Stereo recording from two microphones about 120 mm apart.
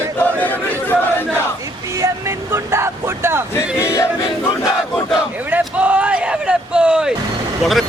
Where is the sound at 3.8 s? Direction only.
25° left (ahead or behind).